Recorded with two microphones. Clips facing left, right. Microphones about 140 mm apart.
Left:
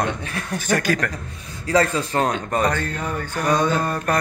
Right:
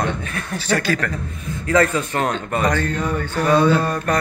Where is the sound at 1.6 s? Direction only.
30° left (ahead or behind).